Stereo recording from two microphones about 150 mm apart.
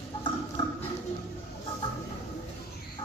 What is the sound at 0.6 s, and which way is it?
Music, 35° left (ahead or behind).